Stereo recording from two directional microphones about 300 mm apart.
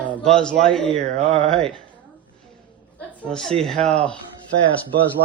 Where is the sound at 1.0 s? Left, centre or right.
Right.